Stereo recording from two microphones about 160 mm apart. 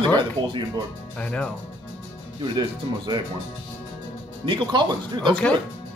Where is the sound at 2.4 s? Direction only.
30° right (ahead or behind).